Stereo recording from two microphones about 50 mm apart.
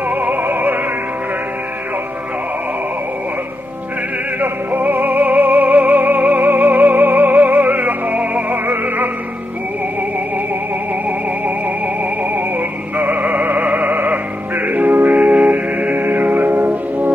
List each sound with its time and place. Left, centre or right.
0.1 s music: right
4.4 s music: right
12.0 s music: right